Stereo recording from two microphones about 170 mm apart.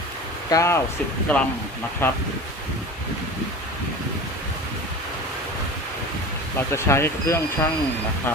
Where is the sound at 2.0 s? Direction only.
10° left (ahead or behind).